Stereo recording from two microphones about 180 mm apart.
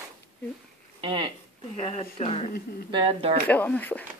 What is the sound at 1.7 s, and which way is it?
Speech, 35° left (ahead or behind).